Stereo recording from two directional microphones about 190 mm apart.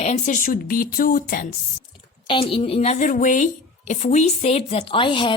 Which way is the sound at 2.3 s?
30° left (ahead or behind).